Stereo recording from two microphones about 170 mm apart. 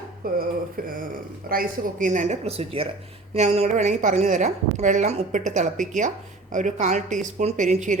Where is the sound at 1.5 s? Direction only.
55° right (ahead or behind).